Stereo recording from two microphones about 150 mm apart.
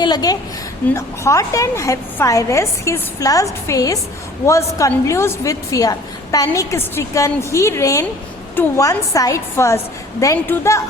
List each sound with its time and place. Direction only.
0.0 s a woman's voice: 25° left (ahead or behind)